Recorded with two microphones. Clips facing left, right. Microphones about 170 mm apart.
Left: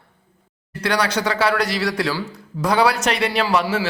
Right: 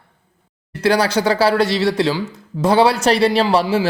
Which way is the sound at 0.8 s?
30° right (ahead or behind).